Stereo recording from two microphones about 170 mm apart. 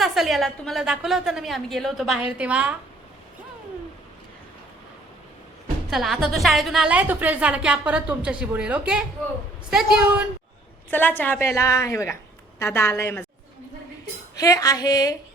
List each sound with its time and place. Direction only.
0.0 s a woman's voice: centre (ahead or behind)
5.9 s a woman's voice: centre (ahead or behind)
10.9 s a woman's voice: 10° left (ahead or behind)
14.3 s speech: 20° left (ahead or behind)